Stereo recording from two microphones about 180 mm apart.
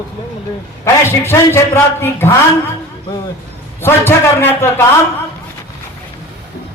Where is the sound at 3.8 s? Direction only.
10° left (ahead or behind).